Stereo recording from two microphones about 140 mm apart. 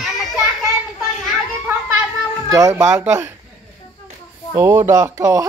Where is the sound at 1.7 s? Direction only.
15° right (ahead or behind).